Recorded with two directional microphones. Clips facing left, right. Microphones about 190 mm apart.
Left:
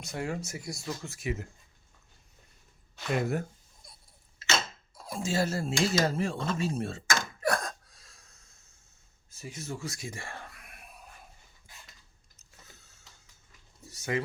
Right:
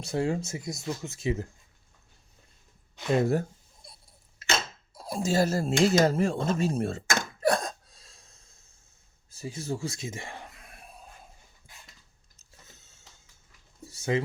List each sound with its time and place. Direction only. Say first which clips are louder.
0.0 s speech: right 6 dB; 30° right (ahead or behind)
3.1 s speech: right 5 dB; 30° right (ahead or behind)
3.8 s clock: right 4 dB; 30° right (ahead or behind)
4.9 s speech: right 4 dB; 35° right (ahead or behind)
7.4 s hiccup: right 6 dB; 25° right (ahead or behind)
9.3 s a sound: right 6 dB; 30° right (ahead or behind)
12.4 s a sound: even; 25° right (ahead or behind)